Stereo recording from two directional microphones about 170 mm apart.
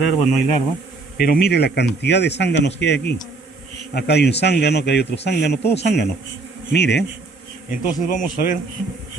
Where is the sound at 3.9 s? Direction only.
75° left (ahead or behind).